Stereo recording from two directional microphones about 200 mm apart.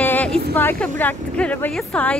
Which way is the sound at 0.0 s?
10° left (ahead or behind).